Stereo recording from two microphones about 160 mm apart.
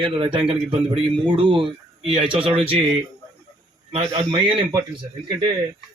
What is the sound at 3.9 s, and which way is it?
Speech, 30° right (ahead or behind).